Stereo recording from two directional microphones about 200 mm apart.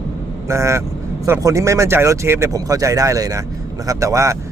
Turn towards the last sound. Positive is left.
turn(degrees=-15)  # may be behind; listen again after turning